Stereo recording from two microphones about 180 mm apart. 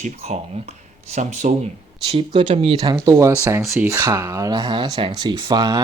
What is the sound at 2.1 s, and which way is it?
Speech, 25° right (ahead or behind).